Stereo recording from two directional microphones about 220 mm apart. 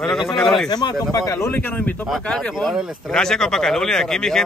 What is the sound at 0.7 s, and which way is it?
Speech, 20° left (ahead or behind).